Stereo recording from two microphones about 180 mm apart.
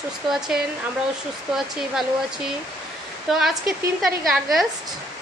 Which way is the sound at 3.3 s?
Centre (ahead or behind).